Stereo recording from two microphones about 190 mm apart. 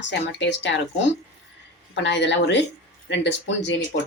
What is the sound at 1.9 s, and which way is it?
Speech, 70° left (ahead or behind).